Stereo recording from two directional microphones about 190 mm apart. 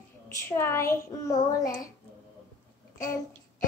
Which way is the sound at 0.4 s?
15° left (ahead or behind).